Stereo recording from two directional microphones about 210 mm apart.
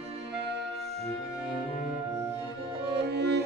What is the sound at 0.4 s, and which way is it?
Music, 55° right (ahead or behind).